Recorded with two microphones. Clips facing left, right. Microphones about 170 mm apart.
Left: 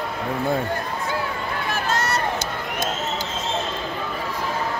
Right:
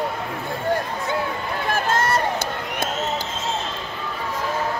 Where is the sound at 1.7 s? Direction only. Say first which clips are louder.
Right 4 dB; 50° right (ahead or behind).